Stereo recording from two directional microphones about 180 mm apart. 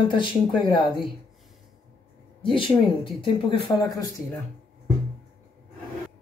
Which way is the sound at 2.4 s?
30° left (ahead or behind).